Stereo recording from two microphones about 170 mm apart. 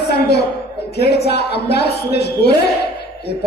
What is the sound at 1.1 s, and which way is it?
A woman's voice, 70° left (ahead or behind).